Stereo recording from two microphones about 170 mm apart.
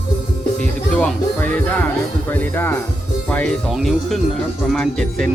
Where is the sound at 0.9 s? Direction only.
5° left (ahead or behind).